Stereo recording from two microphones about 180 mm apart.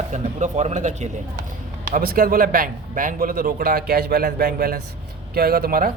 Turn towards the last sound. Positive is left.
turn(degrees=-55)  # may be behind; listen again after turning